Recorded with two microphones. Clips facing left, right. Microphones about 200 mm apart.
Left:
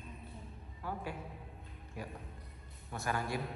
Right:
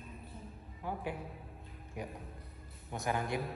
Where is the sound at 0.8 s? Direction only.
15° right (ahead or behind).